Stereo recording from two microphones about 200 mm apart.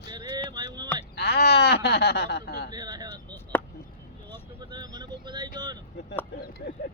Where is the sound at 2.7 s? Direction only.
20° right (ahead or behind).